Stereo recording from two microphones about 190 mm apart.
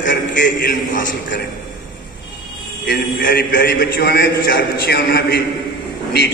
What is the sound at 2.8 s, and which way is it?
A man's voice, 55° left (ahead or behind).